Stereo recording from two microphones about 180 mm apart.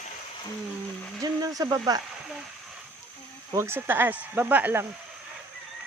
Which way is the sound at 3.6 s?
15° right (ahead or behind).